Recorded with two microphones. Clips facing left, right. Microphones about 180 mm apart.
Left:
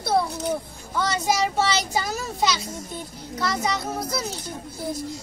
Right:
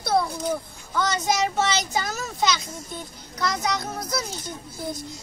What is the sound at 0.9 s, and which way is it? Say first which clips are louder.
Speech: even; 5° left (ahead or behind).